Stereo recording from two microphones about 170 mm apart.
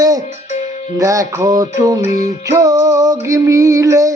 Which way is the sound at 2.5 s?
20° right (ahead or behind).